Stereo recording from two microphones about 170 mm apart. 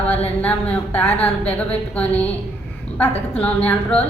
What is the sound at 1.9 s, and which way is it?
A woman's voice, 10° left (ahead or behind).